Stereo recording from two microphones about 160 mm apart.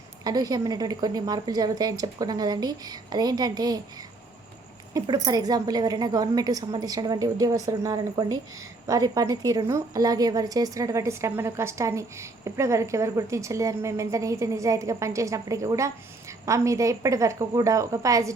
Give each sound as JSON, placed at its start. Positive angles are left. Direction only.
{"t": 0.3, "sound": "a woman's voice", "side_deg": -25}